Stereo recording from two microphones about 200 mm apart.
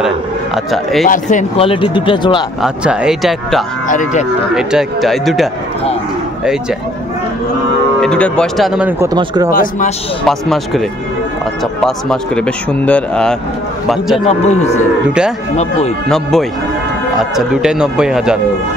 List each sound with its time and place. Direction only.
1.0 s speech: 40° left (ahead or behind)
1.6 s speech: 25° left (ahead or behind)
2.6 s speech: 5° right (ahead or behind)
3.9 s speech: 40° left (ahead or behind)
4.6 s speech: 5° right (ahead or behind)
8.0 s speech: 5° left (ahead or behind)
9.1 s speech: 20° right (ahead or behind)
9.5 s speech: 40° left (ahead or behind)
10.2 s speech: centre (ahead or behind)
14.2 s speech: 35° left (ahead or behind)
16.1 s speech: centre (ahead or behind)
17.5 s speech: 5° right (ahead or behind)